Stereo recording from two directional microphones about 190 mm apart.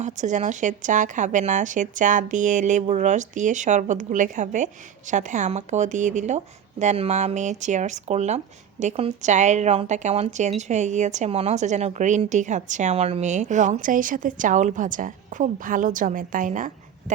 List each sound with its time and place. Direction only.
0.0 s a woman's voice: 40° right (ahead or behind)